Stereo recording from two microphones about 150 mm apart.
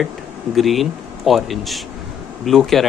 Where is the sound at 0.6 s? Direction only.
Centre (ahead or behind).